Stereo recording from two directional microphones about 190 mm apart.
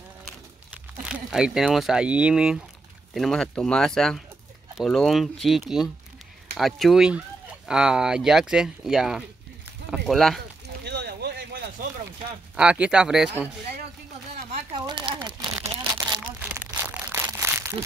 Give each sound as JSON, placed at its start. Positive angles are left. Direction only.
{"t": 1.0, "sound": "speech", "side_deg": -5}
{"t": 10.8, "sound": "a sound", "side_deg": -60}
{"t": 12.5, "sound": "speech", "side_deg": -5}
{"t": 14.5, "sound": "crumpling", "side_deg": -25}